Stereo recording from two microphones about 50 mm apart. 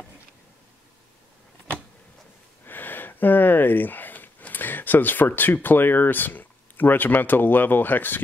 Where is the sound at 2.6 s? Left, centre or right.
Left.